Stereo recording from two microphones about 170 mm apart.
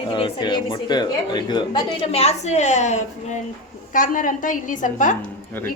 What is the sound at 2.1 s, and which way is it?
A woman's voice, 40° left (ahead or behind).